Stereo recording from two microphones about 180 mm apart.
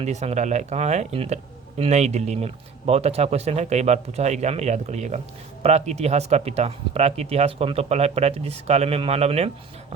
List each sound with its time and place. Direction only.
0.0 s speech: 35° right (ahead or behind)